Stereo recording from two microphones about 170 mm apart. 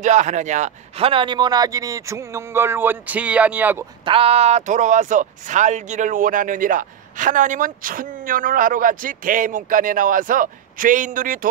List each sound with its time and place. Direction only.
0.0 s a man's voice: 45° right (ahead or behind); by 3.8 s 10° right (ahead or behind)
4.0 s speech: 35° right (ahead or behind); by 11.3 s 50° right (ahead or behind)